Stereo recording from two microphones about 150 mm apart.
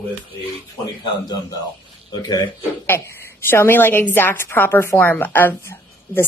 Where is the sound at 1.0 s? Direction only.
25° left (ahead or behind).